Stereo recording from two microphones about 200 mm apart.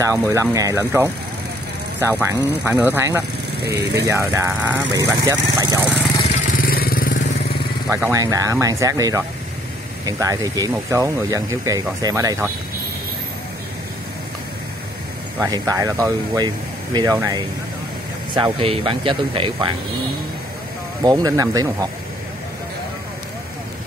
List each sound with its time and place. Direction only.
0.0 s speech: 15° right (ahead or behind)
6.5 s vehicle: 50° left (ahead or behind)
7.9 s speech: 15° right (ahead or behind)
15.3 s speech: 15° right (ahead or behind)
21.0 s speech: 20° right (ahead or behind)